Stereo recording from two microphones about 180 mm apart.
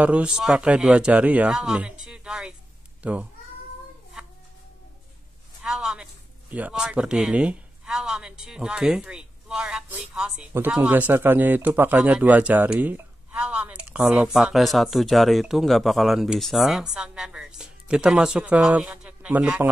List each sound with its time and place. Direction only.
0.0 s speech: 5° right (ahead or behind)
5.6 s a sound: 5° right (ahead or behind)
6.5 s speech: 5° right (ahead or behind)